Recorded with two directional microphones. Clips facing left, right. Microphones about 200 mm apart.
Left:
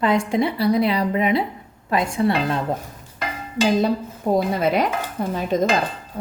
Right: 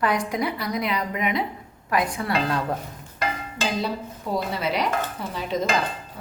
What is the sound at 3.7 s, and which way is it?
A woman's voice, 50° left (ahead or behind).